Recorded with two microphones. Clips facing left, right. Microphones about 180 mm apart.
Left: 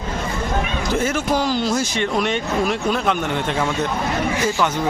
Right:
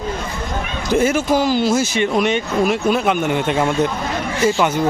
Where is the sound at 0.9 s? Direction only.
10° right (ahead or behind).